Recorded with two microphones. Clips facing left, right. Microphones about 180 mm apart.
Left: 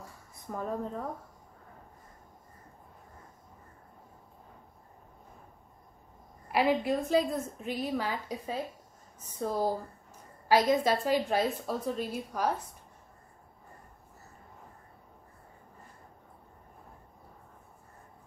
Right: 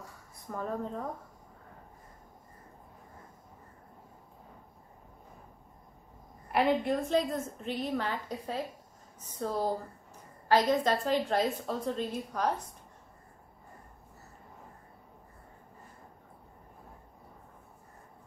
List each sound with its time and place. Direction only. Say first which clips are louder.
0.5 s a woman's voice: left 1 dB; 10° left (ahead or behind)
6.5 s a woman's voice: even; 5° left (ahead or behind)